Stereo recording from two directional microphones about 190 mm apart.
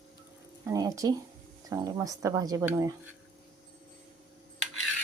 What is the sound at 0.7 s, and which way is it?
A woman's voice, 20° right (ahead or behind).